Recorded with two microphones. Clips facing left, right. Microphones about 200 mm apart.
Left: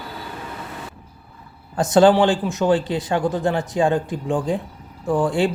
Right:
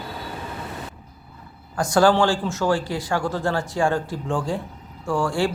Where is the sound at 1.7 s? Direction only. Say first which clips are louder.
Left 4 dB; 20° left (ahead or behind).